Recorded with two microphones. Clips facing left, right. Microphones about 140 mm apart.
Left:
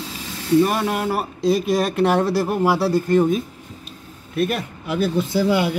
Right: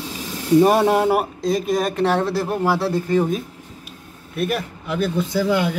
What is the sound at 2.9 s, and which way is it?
Speech, centre (ahead or behind).